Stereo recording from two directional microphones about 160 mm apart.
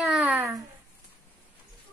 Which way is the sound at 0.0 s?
5° right (ahead or behind).